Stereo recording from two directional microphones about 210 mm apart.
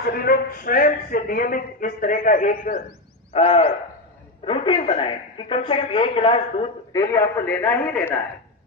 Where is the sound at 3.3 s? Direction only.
25° left (ahead or behind); by 8.2 s 10° left (ahead or behind).